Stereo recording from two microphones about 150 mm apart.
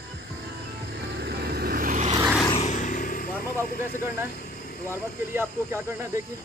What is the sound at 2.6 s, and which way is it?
Vehicle, 55° left (ahead or behind).